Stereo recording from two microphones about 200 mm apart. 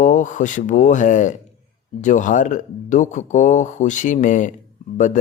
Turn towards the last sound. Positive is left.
turn(degrees=40)  # may be behind; listen again after turning